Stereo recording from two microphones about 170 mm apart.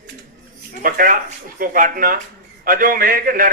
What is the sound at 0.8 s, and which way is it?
A man's voice, 55° right (ahead or behind).